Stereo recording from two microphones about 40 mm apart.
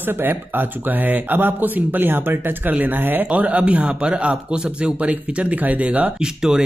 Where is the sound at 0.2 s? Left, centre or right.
Right.